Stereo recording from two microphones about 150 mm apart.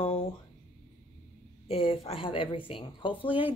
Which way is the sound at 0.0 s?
40° left (ahead or behind).